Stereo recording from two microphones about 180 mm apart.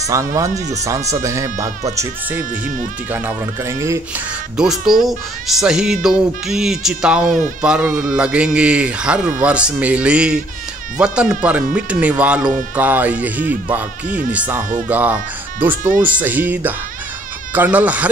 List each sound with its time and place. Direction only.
0.0 s a man's voice: 15° right (ahead or behind)
4.6 s a man's voice: centre (ahead or behind)